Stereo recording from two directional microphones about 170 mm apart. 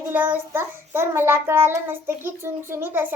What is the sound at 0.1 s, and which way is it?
Child singing, 10° right (ahead or behind).